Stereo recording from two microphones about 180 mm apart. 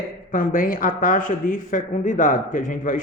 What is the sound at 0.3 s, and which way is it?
A man's voice, 50° left (ahead or behind).